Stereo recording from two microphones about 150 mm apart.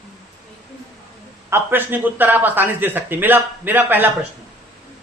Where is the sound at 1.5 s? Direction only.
15° right (ahead or behind).